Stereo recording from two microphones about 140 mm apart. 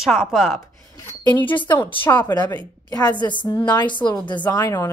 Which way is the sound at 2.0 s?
15° left (ahead or behind).